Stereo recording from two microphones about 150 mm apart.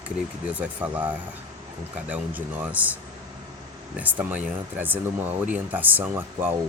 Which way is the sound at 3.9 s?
10° right (ahead or behind).